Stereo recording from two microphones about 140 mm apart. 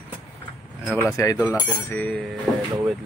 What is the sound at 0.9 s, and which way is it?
Speech, 20° left (ahead or behind).